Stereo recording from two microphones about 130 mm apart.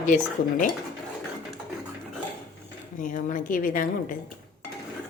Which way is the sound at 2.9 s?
85° left.